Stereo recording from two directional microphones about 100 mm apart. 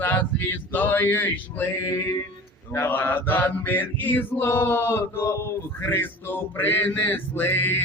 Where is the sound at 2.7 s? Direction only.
25° left (ahead or behind).